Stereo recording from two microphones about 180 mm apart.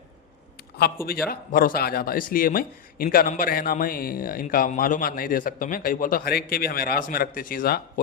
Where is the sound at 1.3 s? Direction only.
55° left (ahead or behind).